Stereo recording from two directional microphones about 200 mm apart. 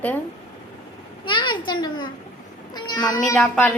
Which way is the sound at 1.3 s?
25° left (ahead or behind).